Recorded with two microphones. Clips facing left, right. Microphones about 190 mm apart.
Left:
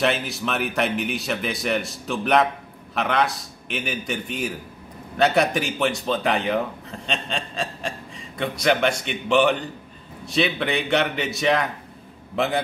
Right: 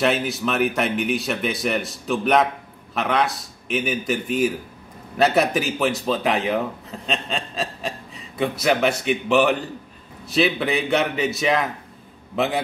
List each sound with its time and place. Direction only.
0.0 s speech: centre (ahead or behind)